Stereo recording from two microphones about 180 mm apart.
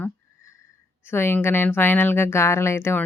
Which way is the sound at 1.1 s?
10° left (ahead or behind).